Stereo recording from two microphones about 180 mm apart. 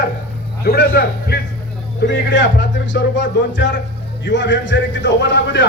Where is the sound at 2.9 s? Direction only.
85° left.